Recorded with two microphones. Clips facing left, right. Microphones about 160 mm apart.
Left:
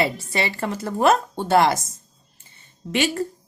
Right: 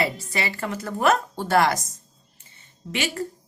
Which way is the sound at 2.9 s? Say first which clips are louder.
Left 5 dB; 35° left (ahead or behind).